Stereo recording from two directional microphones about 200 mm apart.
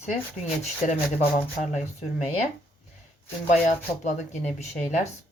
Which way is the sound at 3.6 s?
35° left (ahead or behind).